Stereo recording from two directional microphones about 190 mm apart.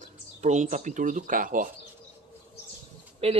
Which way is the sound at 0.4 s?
40° right (ahead or behind).